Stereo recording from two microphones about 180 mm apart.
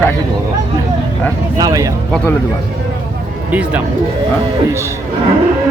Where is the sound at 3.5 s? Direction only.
10° right (ahead or behind).